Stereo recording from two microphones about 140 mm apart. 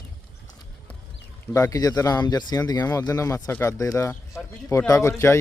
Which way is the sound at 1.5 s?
25° left (ahead or behind).